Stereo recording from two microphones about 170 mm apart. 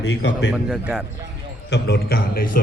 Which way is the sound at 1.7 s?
70° left (ahead or behind).